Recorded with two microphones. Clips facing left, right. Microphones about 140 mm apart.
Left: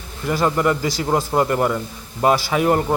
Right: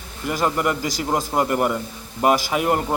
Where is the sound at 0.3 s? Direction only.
10° right (ahead or behind).